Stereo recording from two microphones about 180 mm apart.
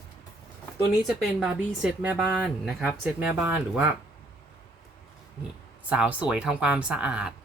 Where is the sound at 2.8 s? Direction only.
10° right (ahead or behind).